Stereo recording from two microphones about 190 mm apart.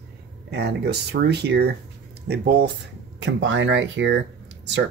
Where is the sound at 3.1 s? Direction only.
75° right (ahead or behind).